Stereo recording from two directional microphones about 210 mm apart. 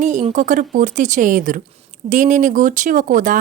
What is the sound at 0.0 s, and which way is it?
A woman's voice, 35° right (ahead or behind).